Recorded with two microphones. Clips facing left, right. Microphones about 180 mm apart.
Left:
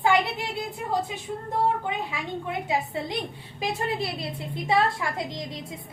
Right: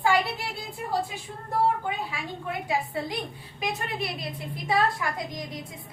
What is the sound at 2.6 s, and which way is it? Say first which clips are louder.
A woman's voice: right 2 dB; 25° left (ahead or behind).